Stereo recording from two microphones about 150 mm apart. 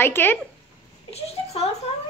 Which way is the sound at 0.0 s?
15° left (ahead or behind).